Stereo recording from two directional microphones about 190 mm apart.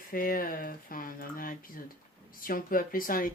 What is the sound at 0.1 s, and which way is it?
Speech, 45° left (ahead or behind).